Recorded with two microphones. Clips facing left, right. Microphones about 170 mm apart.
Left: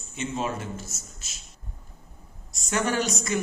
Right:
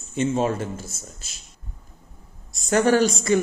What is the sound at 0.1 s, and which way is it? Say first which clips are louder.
Speech: right 8 dB; 45° right (ahead or behind).